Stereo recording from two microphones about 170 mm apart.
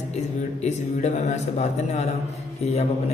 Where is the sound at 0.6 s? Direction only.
40° left (ahead or behind).